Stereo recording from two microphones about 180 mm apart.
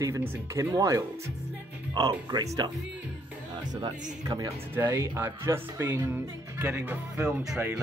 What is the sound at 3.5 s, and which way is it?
Music, 25° right (ahead or behind).